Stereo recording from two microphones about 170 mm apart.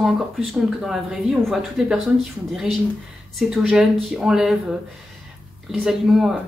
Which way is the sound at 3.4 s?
Centre (ahead or behind).